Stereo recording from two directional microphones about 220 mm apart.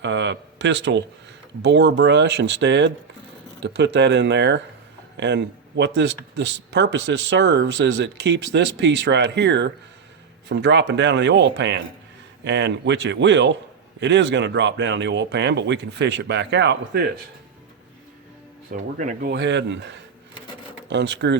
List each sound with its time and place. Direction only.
0.0 s a man's voice: 55° right (ahead or behind)
18.7 s speech: 35° right (ahead or behind)
19.3 s speech: 50° right (ahead or behind)